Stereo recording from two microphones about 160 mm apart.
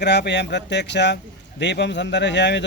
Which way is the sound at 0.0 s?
90° left.